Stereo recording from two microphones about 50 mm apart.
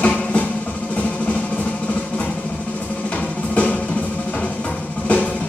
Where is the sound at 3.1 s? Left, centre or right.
Left.